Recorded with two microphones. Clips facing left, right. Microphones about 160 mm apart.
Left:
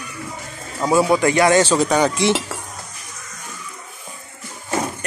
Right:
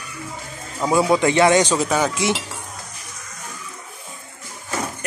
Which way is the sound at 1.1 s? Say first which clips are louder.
Even; 20° right (ahead or behind).